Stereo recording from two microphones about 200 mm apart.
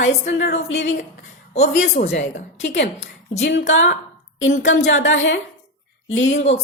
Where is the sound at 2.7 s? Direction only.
60° left (ahead or behind).